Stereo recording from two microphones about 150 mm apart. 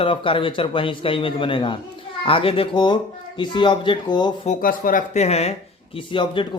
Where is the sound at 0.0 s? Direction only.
35° left (ahead or behind).